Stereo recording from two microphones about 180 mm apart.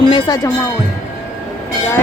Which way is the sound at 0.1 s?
20° left (ahead or behind).